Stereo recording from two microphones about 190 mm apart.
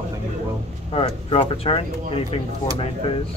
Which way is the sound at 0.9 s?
25° left (ahead or behind).